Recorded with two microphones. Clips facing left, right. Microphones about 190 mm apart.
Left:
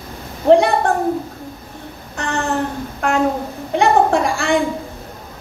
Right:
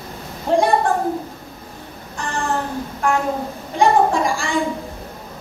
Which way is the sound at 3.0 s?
70° left (ahead or behind).